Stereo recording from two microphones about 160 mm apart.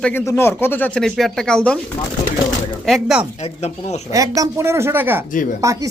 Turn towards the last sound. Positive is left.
turn(degrees=-20)  # may be behind; listen again after turning